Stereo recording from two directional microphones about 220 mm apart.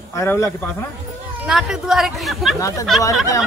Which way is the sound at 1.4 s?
5° right (ahead or behind).